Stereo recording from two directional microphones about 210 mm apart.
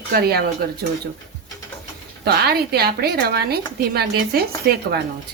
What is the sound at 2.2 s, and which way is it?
A woman's voice, 50° right (ahead or behind).